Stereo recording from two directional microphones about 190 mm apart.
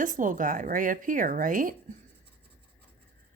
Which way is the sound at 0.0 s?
45° right (ahead or behind).